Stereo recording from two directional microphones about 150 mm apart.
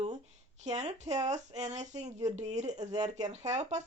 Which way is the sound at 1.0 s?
25° right (ahead or behind).